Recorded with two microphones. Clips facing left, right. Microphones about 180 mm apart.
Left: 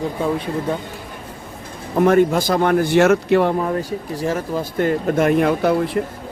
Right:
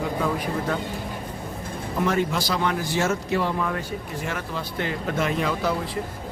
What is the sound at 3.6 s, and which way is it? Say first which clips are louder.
Speech: left 6 dB; 35° left (ahead or behind).